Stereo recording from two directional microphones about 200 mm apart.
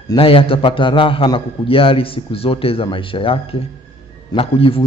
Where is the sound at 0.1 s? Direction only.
25° left (ahead or behind).